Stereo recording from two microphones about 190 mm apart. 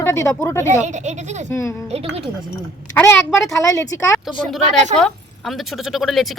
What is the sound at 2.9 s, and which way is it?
Speech, 10° left (ahead or behind).